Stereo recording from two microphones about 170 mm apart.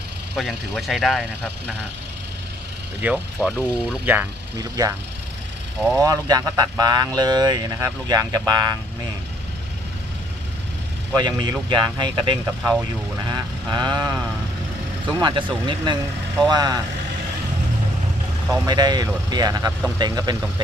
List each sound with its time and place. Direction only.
0.3 s speech: centre (ahead or behind)
3.0 s speech: 5° right (ahead or behind)
6.0 s speech: 20° right (ahead or behind)
11.1 s speech: 25° right (ahead or behind)
13.2 s vehicle: 25° right (ahead or behind)
15.2 s speech: 30° right (ahead or behind)
18.5 s speech: 20° right (ahead or behind)